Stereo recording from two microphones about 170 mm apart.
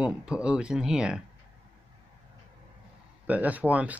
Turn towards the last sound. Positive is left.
turn(degrees=-10)  # may be behind; listen again after turning